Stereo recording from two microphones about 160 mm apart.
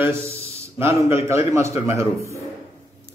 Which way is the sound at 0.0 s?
15° right (ahead or behind).